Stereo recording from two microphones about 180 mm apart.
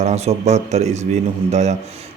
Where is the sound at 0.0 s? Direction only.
40° right (ahead or behind).